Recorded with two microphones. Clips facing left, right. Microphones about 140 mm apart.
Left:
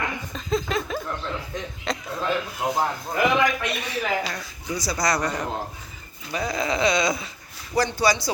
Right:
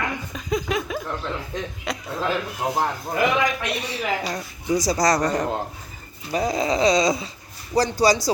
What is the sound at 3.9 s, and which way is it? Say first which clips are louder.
Speech: left 1 dB; 25° right (ahead or behind).